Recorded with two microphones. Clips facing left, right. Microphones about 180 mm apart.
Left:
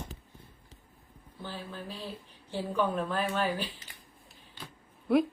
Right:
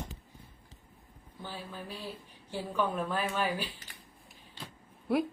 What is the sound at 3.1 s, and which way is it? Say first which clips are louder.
Speech: left 2 dB; 10° right (ahead or behind).